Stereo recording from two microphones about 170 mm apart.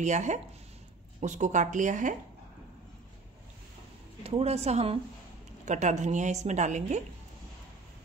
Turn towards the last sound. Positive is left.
turn(degrees=-45)  # may be behind; listen again after turning